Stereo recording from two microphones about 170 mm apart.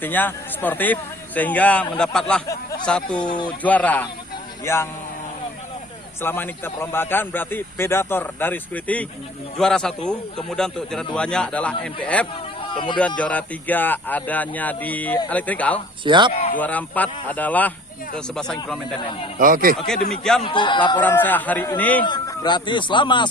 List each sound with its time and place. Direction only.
0.0 s a man's voice: 10° left (ahead or behind)
3.2 s speech: 25° left (ahead or behind)
3.6 s a man's voice: 10° left (ahead or behind)
6.2 s a man's voice: 10° left (ahead or behind)
12.7 s speech: 30° left (ahead or behind)
13.0 s a man's voice: 5° left (ahead or behind)
16.0 s speech: 25° right (ahead or behind)
16.3 s a man's voice: 40° left (ahead or behind)
16.6 s a man's voice: 10° left (ahead or behind)
18.9 s a man's voice: 30° left (ahead or behind)
19.4 s speech: 55° right (ahead or behind)
20.4 s speech: 30° left (ahead or behind)
21.0 s a man's voice: 10° left (ahead or behind)
22.0 s speech: 25° left (ahead or behind)